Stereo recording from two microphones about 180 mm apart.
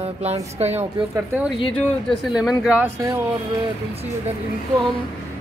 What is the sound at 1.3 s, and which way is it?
Speech, centre (ahead or behind).